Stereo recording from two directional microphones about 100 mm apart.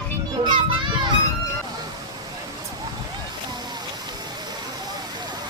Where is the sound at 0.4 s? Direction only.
55° right (ahead or behind).